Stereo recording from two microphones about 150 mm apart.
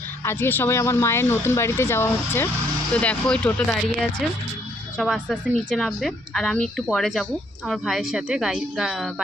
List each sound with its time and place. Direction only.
0.3 s speech: 15° left (ahead or behind)
4.9 s speech: centre (ahead or behind)